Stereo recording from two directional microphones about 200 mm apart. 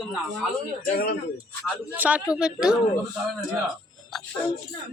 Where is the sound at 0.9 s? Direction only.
50° left (ahead or behind).